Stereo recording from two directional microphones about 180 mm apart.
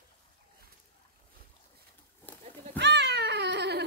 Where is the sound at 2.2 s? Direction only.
10° left (ahead or behind).